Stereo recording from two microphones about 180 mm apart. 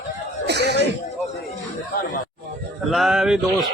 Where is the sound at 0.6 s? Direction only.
65° left (ahead or behind).